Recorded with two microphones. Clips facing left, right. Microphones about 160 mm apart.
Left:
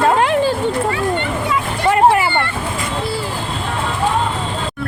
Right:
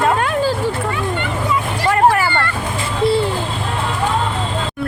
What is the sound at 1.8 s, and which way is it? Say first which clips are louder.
Vehicle: left 2 dB; 20° left (ahead or behind).